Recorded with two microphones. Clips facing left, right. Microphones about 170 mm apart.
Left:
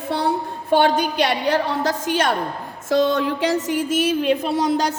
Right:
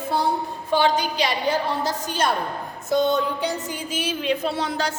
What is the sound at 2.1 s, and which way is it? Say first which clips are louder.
Music: left 3 dB; 90° left.